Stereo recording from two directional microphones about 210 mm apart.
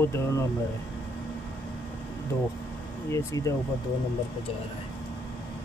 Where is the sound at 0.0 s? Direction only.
15° left (ahead or behind).